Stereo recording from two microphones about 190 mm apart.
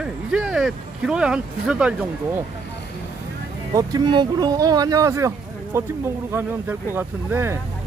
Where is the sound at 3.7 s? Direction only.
20° right (ahead or behind).